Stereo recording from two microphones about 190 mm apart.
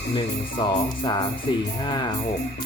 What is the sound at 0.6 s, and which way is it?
Speech, 20° left (ahead or behind).